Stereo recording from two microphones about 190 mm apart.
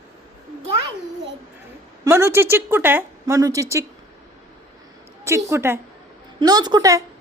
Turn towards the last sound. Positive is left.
turn(degrees=-20)  # may be behind; listen again after turning